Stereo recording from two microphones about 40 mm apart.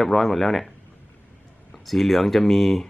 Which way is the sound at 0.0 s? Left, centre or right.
Centre.